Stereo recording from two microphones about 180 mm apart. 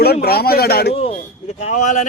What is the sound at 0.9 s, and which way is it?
A man's voice, 35° left (ahead or behind).